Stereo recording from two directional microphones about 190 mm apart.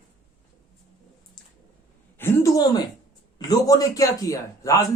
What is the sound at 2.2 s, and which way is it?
A man's voice, 15° left (ahead or behind).